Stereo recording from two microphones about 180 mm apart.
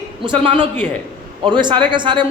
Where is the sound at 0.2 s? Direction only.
25° right (ahead or behind).